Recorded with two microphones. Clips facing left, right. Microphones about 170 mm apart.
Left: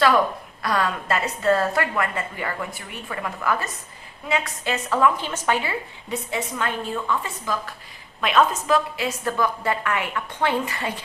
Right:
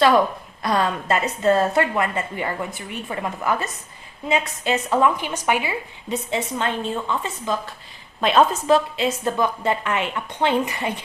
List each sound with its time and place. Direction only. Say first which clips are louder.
0.6 s a woman's voice: right 2 dB; 25° right (ahead or behind)